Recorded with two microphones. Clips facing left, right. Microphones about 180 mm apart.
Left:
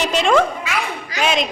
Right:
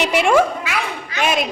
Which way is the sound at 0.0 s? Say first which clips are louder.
Right 1 dB; 10° right (ahead or behind).